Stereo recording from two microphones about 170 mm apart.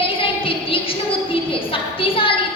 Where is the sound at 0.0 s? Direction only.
30° left (ahead or behind).